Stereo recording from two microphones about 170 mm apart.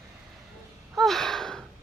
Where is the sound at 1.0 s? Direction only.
Centre (ahead or behind).